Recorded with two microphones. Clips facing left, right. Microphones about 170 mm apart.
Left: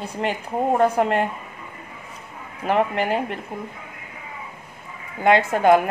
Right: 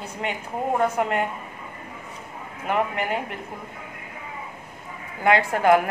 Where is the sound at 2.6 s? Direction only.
30° left (ahead or behind).